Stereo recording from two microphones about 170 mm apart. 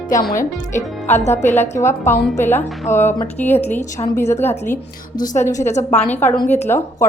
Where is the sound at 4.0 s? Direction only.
25° left (ahead or behind).